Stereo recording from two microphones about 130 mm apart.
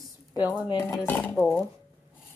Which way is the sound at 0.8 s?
15° left (ahead or behind).